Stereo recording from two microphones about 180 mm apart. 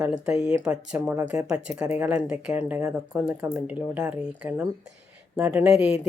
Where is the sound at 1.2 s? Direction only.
15° right (ahead or behind).